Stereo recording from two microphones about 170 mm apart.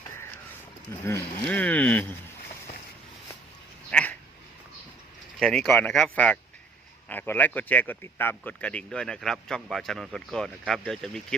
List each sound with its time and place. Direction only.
0.9 s speech: 15° left (ahead or behind)
1.5 s a sound: 10° left (ahead or behind)
3.9 s dog: 5° left (ahead or behind)
5.4 s a man's voice: 5° left (ahead or behind)